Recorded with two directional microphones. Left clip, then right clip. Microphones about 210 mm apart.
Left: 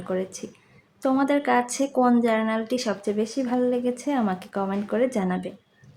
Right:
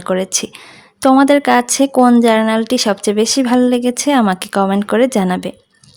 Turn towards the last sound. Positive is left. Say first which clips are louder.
# right 10 dB
turn(degrees=-50)  # may be behind; listen again after turning